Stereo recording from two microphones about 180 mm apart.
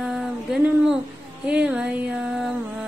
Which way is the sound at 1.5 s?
5° right (ahead or behind).